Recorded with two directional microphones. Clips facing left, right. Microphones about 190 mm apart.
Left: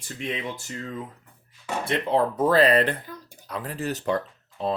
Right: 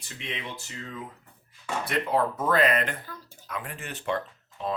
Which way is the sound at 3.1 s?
15° left (ahead or behind).